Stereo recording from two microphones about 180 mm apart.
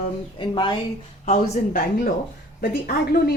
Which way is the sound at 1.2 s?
45° left (ahead or behind).